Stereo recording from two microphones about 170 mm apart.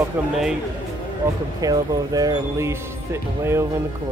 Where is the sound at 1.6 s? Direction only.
20° right (ahead or behind).